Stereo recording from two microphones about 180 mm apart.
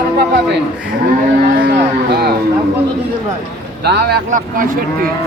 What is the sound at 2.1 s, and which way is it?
Speech, 65° right (ahead or behind).